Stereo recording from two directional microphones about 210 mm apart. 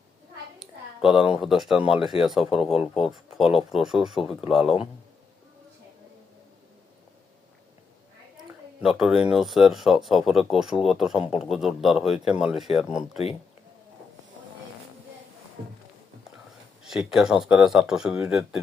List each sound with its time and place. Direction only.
0.6 s speech: 5° right (ahead or behind)
4.6 s speech: 25° left (ahead or behind)
8.8 s speech: 5° right (ahead or behind)
16.8 s speech: centre (ahead or behind)